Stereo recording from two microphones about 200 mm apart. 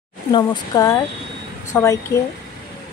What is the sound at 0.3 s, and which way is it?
Speech, 20° left (ahead or behind).